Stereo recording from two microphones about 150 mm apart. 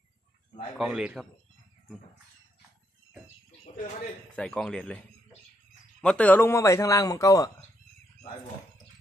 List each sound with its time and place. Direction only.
0.7 s a man's voice: 5° right (ahead or behind)
4.4 s a man's voice: 5° left (ahead or behind); by 7.5 s 25° left (ahead or behind)